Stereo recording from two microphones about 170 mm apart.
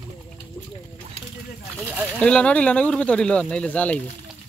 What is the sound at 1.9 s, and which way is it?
Speech, 10° right (ahead or behind).